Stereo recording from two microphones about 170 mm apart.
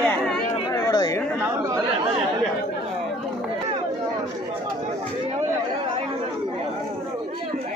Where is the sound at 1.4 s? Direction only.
15° right (ahead or behind).